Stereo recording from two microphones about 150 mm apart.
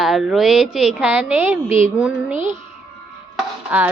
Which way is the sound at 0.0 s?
Centre (ahead or behind).